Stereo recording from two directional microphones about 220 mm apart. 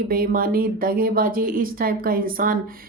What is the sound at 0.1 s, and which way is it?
Speech, 40° right (ahead or behind).